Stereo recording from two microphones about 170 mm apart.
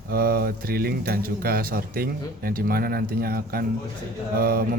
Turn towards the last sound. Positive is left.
turn(degrees=-60)  # may be behind; listen again after turning